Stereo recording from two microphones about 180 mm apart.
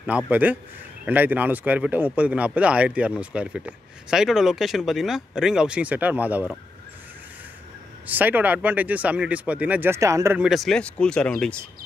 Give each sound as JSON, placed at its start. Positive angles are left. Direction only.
{"t": 0.3, "sound": "speech", "side_deg": -10}
{"t": 8.1, "sound": "speech", "side_deg": -10}
{"t": 10.4, "sound": "speech", "side_deg": 0}